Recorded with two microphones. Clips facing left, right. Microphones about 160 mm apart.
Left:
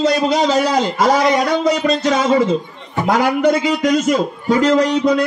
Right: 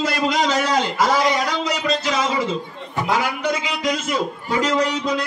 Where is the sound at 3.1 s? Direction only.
45° left (ahead or behind).